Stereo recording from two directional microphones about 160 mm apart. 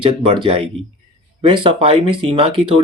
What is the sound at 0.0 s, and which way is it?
Speech, 35° right (ahead or behind).